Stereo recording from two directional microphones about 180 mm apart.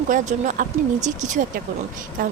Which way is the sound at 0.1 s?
45° right (ahead or behind).